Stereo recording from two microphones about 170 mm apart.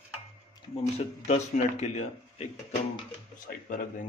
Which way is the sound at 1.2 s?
40° left (ahead or behind).